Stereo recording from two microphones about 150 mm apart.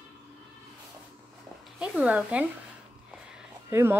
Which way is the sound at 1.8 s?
10° right (ahead or behind).